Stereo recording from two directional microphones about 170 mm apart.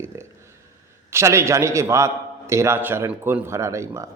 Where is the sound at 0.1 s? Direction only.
15° right (ahead or behind).